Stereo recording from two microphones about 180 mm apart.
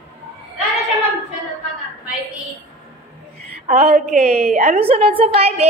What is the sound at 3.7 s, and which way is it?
A woman's voice, 35° right (ahead or behind).